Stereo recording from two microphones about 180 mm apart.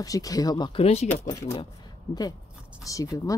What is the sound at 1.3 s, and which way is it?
Speech, 15° left (ahead or behind).